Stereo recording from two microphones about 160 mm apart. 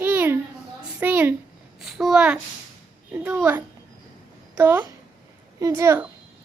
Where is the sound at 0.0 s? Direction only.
10° right (ahead or behind).